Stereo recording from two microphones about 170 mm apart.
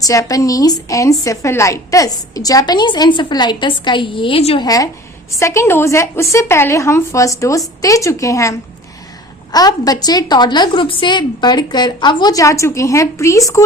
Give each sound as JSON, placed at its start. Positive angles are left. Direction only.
{"t": 0.0, "sound": "a woman's voice", "side_deg": 20}
{"t": 4.6, "sound": "a woman's voice", "side_deg": 20}